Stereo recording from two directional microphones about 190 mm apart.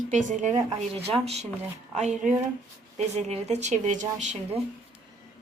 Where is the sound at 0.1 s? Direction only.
40° right (ahead or behind).